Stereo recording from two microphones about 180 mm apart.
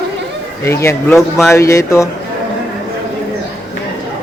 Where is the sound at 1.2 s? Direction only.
Centre (ahead or behind).